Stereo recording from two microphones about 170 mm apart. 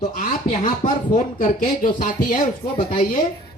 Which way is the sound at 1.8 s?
50° left (ahead or behind).